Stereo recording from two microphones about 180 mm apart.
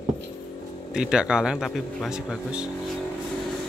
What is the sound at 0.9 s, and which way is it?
Speech, 5° right (ahead or behind).